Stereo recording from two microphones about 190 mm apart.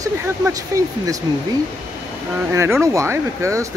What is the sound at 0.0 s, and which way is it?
Speech, 15° right (ahead or behind).